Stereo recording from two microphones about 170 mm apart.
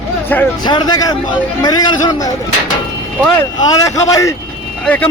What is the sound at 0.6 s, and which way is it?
A man's voice, 25° left (ahead or behind).